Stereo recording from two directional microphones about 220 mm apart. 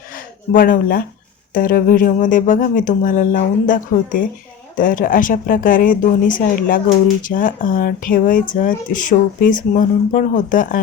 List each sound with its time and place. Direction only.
0.5 s speech: 40° left (ahead or behind)